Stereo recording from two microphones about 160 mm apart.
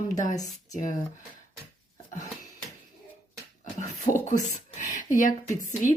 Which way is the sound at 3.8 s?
50° left (ahead or behind).